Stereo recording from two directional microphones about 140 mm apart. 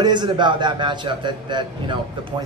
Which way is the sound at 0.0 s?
35° right (ahead or behind).